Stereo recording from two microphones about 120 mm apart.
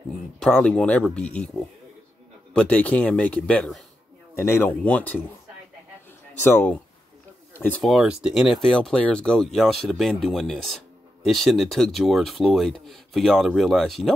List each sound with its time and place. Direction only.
0.4 s a man's voice: 10° left (ahead or behind)
2.5 s a man's voice: 10° left (ahead or behind)
4.4 s a man's voice: 20° left (ahead or behind)
6.4 s a man's voice: 15° left (ahead or behind)
7.8 s speech: 5° right (ahead or behind)